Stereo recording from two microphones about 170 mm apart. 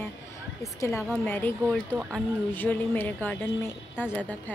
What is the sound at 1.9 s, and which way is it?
Speech, 15° right (ahead or behind).